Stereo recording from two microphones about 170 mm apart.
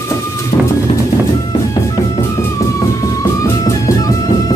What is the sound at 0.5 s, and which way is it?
Music, 35° left (ahead or behind).